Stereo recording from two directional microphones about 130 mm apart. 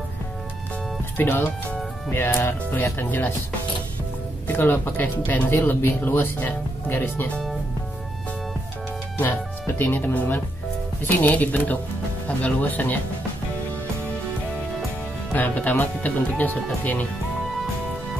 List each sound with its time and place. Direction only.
1.1 s speech: 15° left (ahead or behind)
4.5 s speech: 15° left (ahead or behind)
9.2 s speech: 15° left (ahead or behind)
15.3 s speech: 10° left (ahead or behind)